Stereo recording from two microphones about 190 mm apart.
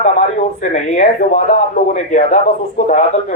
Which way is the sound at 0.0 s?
45° left (ahead or behind).